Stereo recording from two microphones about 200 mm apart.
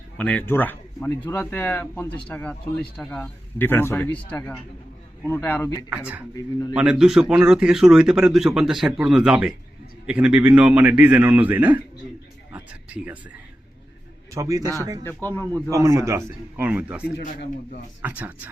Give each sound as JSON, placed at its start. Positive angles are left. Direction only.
{"t": 0.2, "sound": "speech", "side_deg": 5}
{"t": 6.7, "sound": "a man's voice", "side_deg": -5}
{"t": 12.5, "sound": "a sound", "side_deg": -10}
{"t": 14.3, "sound": "a man's voice", "side_deg": -15}
{"t": 15.0, "sound": "speech", "side_deg": 10}
{"t": 15.7, "sound": "a man's voice", "side_deg": -15}
{"t": 17.2, "sound": "speech", "side_deg": 40}
{"t": 18.0, "sound": "a man's voice", "side_deg": -10}